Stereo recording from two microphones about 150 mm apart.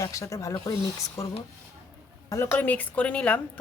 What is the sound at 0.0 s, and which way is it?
A woman's voice, 20° left (ahead or behind).